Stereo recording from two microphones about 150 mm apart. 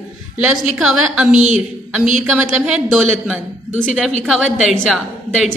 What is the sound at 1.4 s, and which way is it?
Speech, 55° right (ahead or behind).